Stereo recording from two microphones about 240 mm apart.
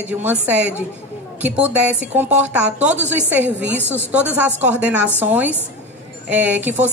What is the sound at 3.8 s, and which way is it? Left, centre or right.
Speech, centre.